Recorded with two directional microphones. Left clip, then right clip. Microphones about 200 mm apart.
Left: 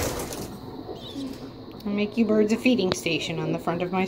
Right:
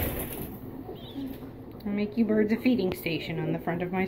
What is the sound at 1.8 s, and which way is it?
A woman's voice, 5° left (ahead or behind).